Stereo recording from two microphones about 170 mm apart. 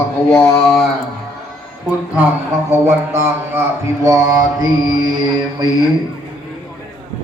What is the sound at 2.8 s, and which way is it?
Mantra, 15° right (ahead or behind).